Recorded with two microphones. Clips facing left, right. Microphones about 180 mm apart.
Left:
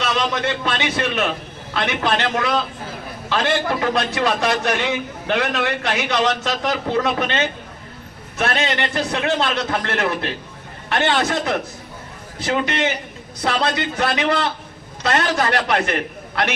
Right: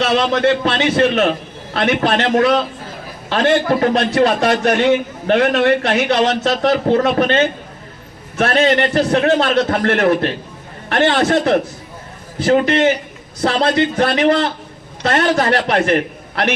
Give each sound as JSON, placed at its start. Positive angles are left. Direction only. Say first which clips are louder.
{"t": 0.0, "sound": "a man's voice", "louder": "right 7 dB", "side_deg": -50}
{"t": 13.9, "sound": "a man's voice", "louder": "right 6 dB", "side_deg": -45}
{"t": 15.4, "sound": "a man's voice", "louder": "right 4 dB", "side_deg": -45}